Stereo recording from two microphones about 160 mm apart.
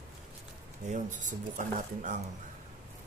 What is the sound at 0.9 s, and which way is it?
Speech, 50° right (ahead or behind).